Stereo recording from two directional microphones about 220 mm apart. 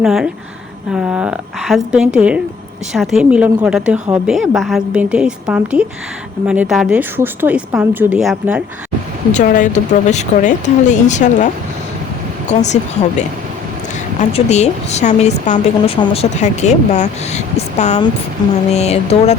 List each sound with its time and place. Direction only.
0.0 s a woman's voice: centre (ahead or behind)
9.3 s speech: 35° left (ahead or behind)
14.2 s speech: 30° left (ahead or behind)